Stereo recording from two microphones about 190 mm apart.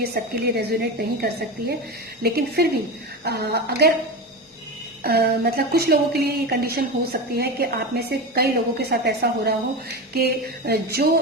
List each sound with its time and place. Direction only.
0.0 s speech: 55° right (ahead or behind)
5.0 s speech: 55° right (ahead or behind)